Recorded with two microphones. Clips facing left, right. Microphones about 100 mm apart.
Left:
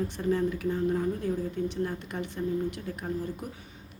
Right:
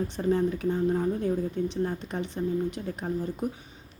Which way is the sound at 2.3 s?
25° right (ahead or behind).